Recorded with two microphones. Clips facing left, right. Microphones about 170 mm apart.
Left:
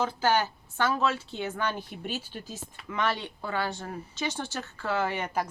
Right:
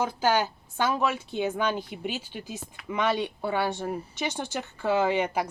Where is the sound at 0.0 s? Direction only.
15° right (ahead or behind).